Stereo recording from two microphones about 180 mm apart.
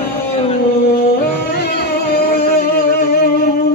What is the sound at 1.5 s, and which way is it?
Music, 60° left (ahead or behind).